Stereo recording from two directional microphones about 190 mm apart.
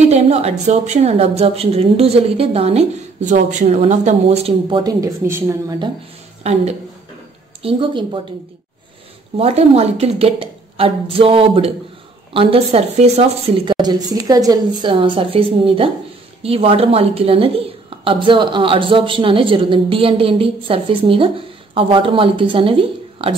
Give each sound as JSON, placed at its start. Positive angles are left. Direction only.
{"t": 0.1, "sound": "a woman's voice", "side_deg": -35}
{"t": 7.6, "sound": "a woman's voice", "side_deg": -25}
{"t": 9.4, "sound": "a woman's voice", "side_deg": -35}
{"t": 13.7, "sound": "a woman's voice", "side_deg": -20}